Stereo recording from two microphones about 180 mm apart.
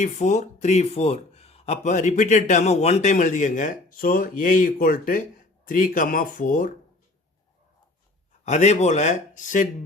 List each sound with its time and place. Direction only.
0.0 s speech: 40° left (ahead or behind)
8.4 s speech: 40° left (ahead or behind)